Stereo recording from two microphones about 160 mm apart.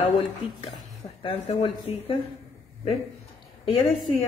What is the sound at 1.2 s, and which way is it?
Speech, 35° left (ahead or behind).